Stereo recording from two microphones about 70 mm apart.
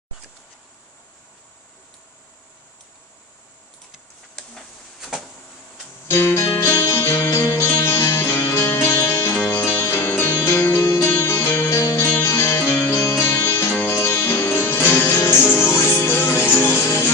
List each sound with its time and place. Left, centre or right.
4.4 s tick-tock: centre
6.0 s music: left
12.1 s music: left